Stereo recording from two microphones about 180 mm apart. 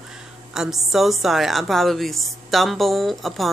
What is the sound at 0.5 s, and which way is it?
Speech, centre (ahead or behind).